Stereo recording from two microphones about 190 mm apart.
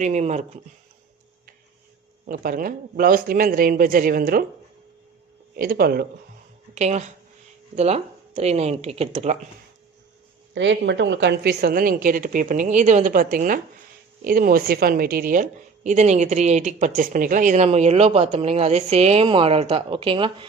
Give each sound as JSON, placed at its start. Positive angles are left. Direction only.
{"t": 0.0, "sound": "a woman's voice", "side_deg": -35}
{"t": 2.2, "sound": "a woman's voice", "side_deg": -50}
{"t": 5.6, "sound": "a woman's voice", "side_deg": -55}
{"t": 6.7, "sound": "a woman's voice", "side_deg": -35}
{"t": 10.5, "sound": "a woman's voice", "side_deg": -75}